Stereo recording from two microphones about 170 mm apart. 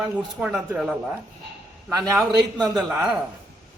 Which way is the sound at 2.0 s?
20° right (ahead or behind).